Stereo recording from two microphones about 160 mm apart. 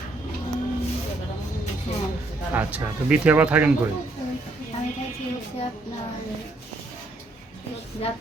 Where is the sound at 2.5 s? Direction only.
10° right (ahead or behind).